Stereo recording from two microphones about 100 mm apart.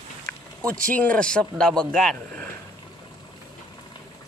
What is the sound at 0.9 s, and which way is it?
Speech, 15° left (ahead or behind).